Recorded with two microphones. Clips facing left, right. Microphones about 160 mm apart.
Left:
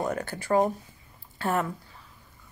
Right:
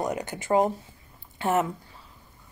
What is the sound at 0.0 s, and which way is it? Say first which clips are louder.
A woman's voice: right 1 dB; 15° right (ahead or behind).